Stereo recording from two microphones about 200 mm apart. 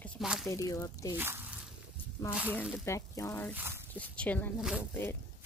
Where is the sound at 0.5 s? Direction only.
15° left (ahead or behind).